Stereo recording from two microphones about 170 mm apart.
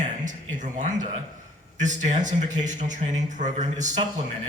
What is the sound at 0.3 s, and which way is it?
A man's voice, 45° right (ahead or behind).